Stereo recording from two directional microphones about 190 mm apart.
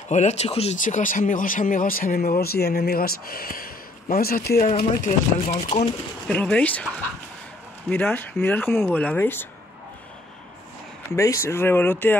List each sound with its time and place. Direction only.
0.1 s speech: 35° left (ahead or behind); by 4.6 s 50° left (ahead or behind)
5.0 s speech: 40° left (ahead or behind)
6.2 s speech: 5° left (ahead or behind)
7.9 s speech: 10° left (ahead or behind)
11.1 s speech: 15° left (ahead or behind)